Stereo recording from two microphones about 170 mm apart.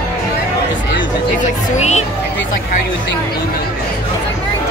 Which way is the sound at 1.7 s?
40° left (ahead or behind).